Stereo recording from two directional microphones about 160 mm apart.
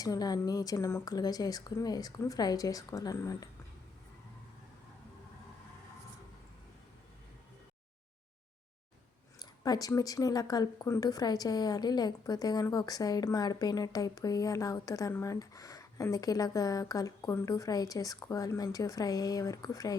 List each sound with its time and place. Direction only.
0.0 s speech: 25° left (ahead or behind)
9.4 s speech: 25° left (ahead or behind)